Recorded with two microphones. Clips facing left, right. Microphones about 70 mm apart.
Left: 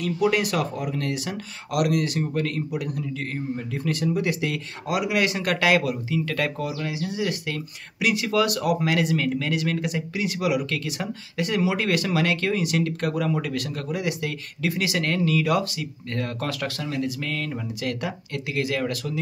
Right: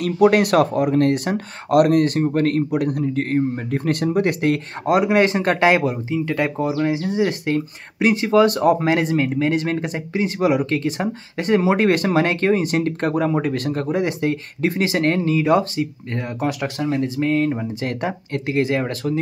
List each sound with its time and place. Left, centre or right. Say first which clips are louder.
0.0 s speech: right 7 dB; right